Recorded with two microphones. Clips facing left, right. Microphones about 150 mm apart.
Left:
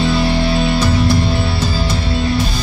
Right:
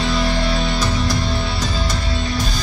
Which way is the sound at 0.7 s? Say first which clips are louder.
Left 6 dB; 30° left (ahead or behind).